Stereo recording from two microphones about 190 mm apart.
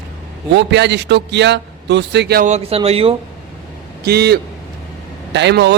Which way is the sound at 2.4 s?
35° right (ahead or behind).